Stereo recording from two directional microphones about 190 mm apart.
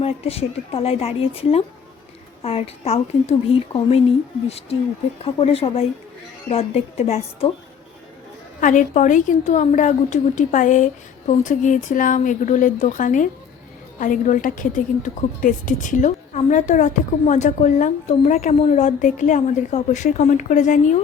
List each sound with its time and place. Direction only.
0.0 s a woman's voice: 30° left (ahead or behind)
8.6 s a woman's voice: 40° left (ahead or behind)